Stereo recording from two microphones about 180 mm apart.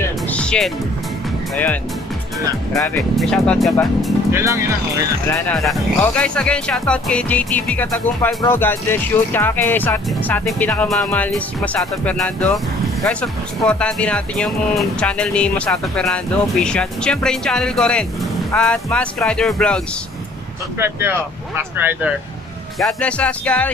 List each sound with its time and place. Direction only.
0.3 s music: 5° left (ahead or behind)
1.5 s speech: 10° left (ahead or behind)
3.2 s speech: centre (ahead or behind)
4.3 s speech: 15° right (ahead or behind)
5.6 s speech: 5° left (ahead or behind)
20.8 s speech: 10° right (ahead or behind)
22.8 s speech: 5° left (ahead or behind)